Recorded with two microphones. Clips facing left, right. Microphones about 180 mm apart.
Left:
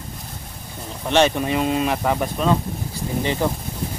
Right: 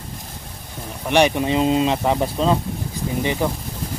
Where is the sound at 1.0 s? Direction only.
15° right (ahead or behind).